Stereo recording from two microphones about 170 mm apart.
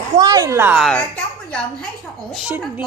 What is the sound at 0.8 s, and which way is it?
A woman's voice, 5° left (ahead or behind).